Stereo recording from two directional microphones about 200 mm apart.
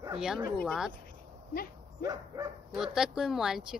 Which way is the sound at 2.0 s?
20° right (ahead or behind).